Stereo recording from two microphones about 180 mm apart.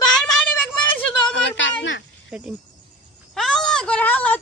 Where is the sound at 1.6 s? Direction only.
90° left.